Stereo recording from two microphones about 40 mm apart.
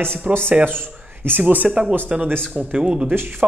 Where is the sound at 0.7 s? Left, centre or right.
Right.